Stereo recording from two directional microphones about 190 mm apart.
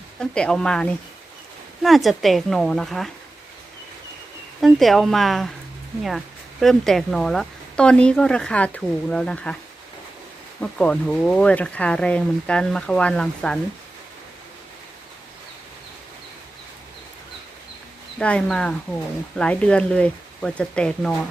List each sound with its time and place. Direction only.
0.2 s speech: 5° left (ahead or behind)
4.6 s speech: centre (ahead or behind)
10.6 s speech: 5° left (ahead or behind)
18.2 s speech: 5° left (ahead or behind)